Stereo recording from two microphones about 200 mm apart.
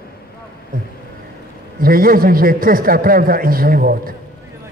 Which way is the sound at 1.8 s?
45° right (ahead or behind).